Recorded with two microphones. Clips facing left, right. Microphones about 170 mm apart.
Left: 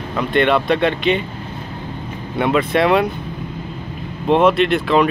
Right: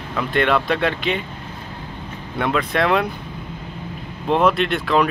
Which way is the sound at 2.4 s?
5° left (ahead or behind).